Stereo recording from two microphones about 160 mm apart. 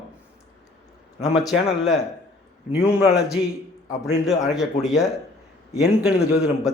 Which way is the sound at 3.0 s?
5° right (ahead or behind).